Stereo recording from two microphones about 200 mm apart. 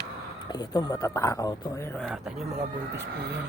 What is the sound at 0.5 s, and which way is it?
Speech, 20° left (ahead or behind).